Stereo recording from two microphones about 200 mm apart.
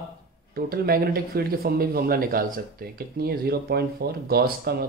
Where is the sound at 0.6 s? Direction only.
50° right (ahead or behind).